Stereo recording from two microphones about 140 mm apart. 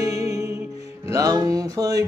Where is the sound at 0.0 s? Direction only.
25° right (ahead or behind).